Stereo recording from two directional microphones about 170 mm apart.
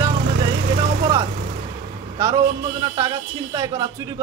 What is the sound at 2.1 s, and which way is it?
A man's voice, 20° right (ahead or behind).